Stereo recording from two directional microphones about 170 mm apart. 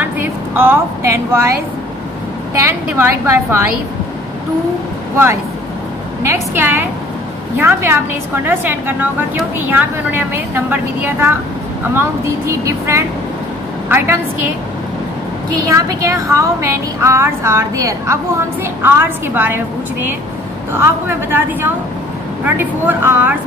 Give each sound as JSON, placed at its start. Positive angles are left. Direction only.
{"t": 0.0, "sound": "a woman's voice", "side_deg": -15}
{"t": 2.6, "sound": "a woman's voice", "side_deg": -15}
{"t": 5.1, "sound": "a woman's voice", "side_deg": -15}
{"t": 15.5, "sound": "a woman's voice", "side_deg": -20}